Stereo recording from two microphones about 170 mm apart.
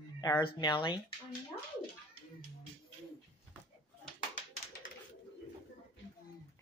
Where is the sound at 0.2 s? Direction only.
20° left (ahead or behind).